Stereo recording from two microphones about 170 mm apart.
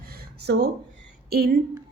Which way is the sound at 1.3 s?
70° right (ahead or behind).